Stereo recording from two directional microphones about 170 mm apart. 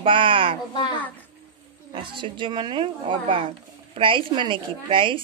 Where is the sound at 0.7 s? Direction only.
25° left (ahead or behind).